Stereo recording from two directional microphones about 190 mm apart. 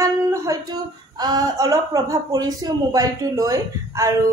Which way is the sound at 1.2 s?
20° right (ahead or behind).